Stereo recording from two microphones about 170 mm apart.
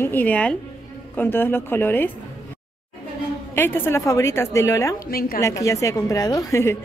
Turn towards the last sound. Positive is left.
turn(degrees=20)  # may be behind; listen again after turning